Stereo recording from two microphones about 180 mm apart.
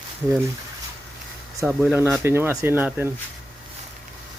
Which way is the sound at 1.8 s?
10° right (ahead or behind).